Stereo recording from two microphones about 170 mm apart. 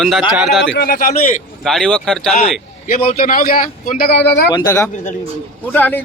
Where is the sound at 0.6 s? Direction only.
80° left.